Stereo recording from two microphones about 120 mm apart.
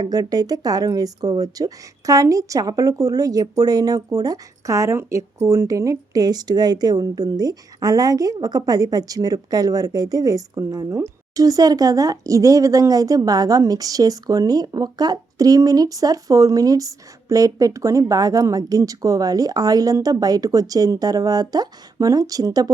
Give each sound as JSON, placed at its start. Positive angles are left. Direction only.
{"t": 0.0, "sound": "speech", "side_deg": -30}